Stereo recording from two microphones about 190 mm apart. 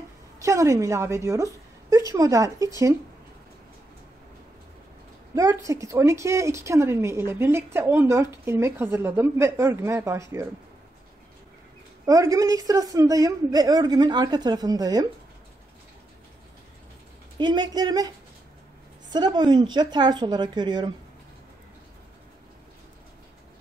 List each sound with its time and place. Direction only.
0.4 s a woman's voice: 15° right (ahead or behind)
5.3 s a woman's voice: 15° right (ahead or behind)
12.1 s a woman's voice: 20° right (ahead or behind)
17.4 s a woman's voice: 25° right (ahead or behind)